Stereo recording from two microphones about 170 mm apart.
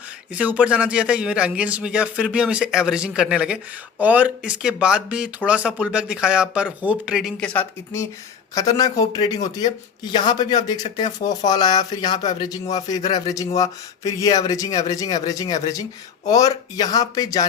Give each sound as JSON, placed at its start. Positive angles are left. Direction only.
{"t": 0.3, "sound": "a man's voice", "side_deg": -10}
{"t": 8.5, "sound": "speech", "side_deg": 20}